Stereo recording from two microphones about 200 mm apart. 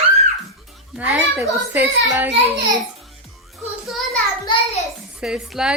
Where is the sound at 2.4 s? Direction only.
20° right (ahead or behind).